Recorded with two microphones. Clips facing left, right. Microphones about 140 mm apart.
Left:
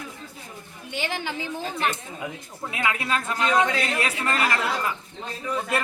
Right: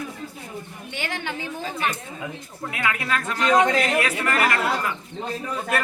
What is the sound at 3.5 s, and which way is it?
Speech, 40° right (ahead or behind).